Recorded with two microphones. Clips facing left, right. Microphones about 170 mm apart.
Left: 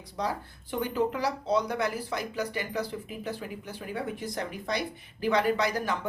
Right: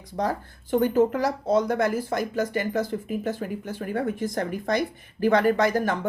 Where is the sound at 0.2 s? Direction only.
50° right (ahead or behind).